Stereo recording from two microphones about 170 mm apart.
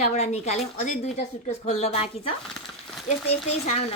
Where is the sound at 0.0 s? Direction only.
45° left (ahead or behind).